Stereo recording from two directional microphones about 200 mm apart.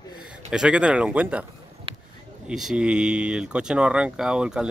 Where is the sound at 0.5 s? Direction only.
5° right (ahead or behind).